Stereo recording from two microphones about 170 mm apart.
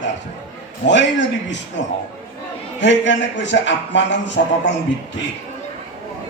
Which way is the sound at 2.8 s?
90° left.